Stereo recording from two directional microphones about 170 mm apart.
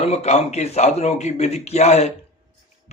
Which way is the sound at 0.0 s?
40° left (ahead or behind).